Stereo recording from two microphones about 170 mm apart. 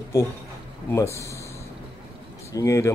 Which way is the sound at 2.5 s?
20° left (ahead or behind).